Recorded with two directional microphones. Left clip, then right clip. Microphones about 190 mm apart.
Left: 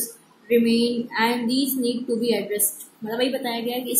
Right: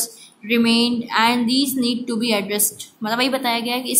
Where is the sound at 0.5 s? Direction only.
30° right (ahead or behind).